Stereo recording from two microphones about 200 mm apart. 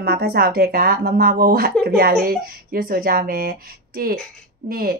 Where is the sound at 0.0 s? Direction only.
50° right (ahead or behind).